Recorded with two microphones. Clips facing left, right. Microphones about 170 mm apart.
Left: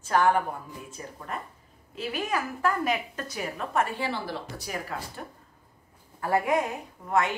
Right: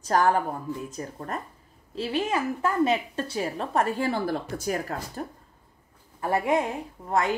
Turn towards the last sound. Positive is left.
turn(degrees=-35)  # may be behind; listen again after turning